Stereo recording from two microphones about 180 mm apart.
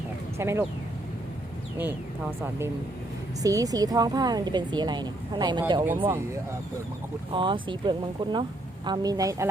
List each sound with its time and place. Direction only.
0.3 s speech: 15° right (ahead or behind)
1.8 s a woman's voice: 10° right (ahead or behind)
7.3 s a woman's voice: 25° right (ahead or behind)